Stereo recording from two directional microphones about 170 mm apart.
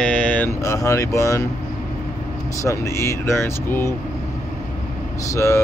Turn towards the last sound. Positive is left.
turn(degrees=15)  # may be behind; listen again after turning